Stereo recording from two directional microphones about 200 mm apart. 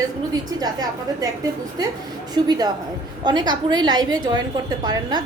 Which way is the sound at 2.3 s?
20° right (ahead or behind).